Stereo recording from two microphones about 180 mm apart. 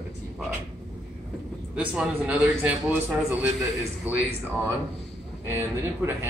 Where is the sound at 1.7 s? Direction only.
5° right (ahead or behind).